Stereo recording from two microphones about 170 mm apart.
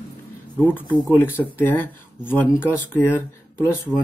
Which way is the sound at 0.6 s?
10° left (ahead or behind).